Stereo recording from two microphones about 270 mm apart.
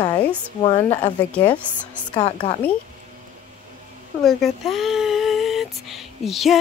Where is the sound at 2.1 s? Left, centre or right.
Centre.